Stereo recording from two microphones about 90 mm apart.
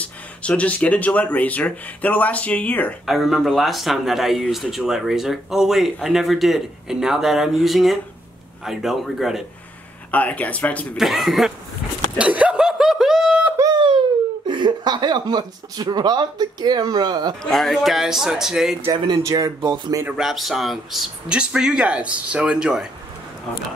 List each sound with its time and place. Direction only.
0.0 s speech: 15° left (ahead or behind)
3.1 s speech: centre (ahead or behind)
10.1 s speech: 15° left (ahead or behind)
11.0 s speech: centre (ahead or behind)
12.2 s chuckle: 15° right (ahead or behind)
13.7 s a sound: 65° right (ahead or behind)
14.5 s speech: 55° right (ahead or behind)
17.4 s speech: 5° left (ahead or behind)
18.9 s speech: 55° right (ahead or behind)
19.3 s speech: 35° right (ahead or behind)
19.7 s speech: 50° right (ahead or behind)
20.2 s speech: centre (ahead or behind)